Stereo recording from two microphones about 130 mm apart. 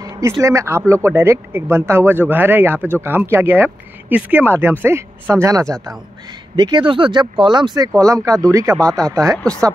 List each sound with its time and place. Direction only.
0.4 s speech: 25° right (ahead or behind)
6.5 s speech: 35° right (ahead or behind)
8.7 s speech: 5° left (ahead or behind)
9.1 s speech: 25° right (ahead or behind)